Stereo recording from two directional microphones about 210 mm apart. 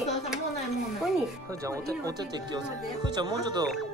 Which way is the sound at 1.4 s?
15° right (ahead or behind).